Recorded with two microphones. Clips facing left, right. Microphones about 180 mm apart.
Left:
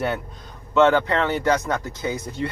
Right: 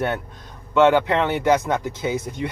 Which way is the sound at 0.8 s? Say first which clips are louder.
Right 1 dB; 15° right (ahead or behind).